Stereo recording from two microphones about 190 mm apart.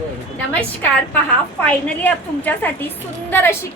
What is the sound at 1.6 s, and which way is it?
A woman's voice, 5° left (ahead or behind).